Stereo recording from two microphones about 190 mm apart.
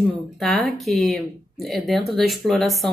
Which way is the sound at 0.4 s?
Centre (ahead or behind).